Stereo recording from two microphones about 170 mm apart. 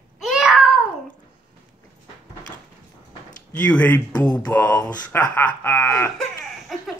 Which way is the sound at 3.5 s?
10° left (ahead or behind).